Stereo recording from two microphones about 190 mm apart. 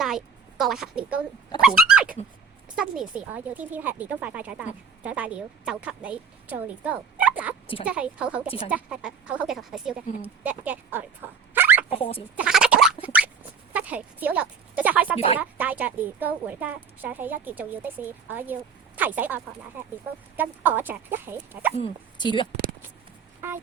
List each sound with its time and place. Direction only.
0.6 s a woman's voice: centre (ahead or behind)
7.3 s a sound: 10° right (ahead or behind)
7.9 s speech: 5° right (ahead or behind)
8.4 s speech: 30° left (ahead or behind)
8.7 s speech: 5° right (ahead or behind)
11.5 s a sound: 10° right (ahead or behind)
11.9 s speech: 30° left (ahead or behind)
12.4 s a sound: 5° right (ahead or behind)
13.7 s speech: 5° right (ahead or behind)
21.8 s speech: 25° left (ahead or behind)
23.4 s speech: 10° right (ahead or behind)